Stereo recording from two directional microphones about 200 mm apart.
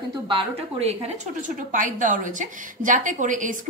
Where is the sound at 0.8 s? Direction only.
30° right (ahead or behind).